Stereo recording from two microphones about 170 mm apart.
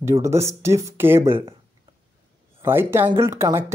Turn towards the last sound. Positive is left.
turn(degrees=-15)  # may be behind; listen again after turning